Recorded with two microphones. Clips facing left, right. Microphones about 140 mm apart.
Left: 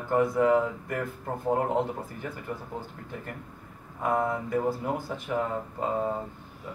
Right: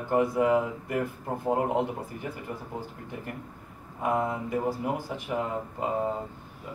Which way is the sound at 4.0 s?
15° right (ahead or behind).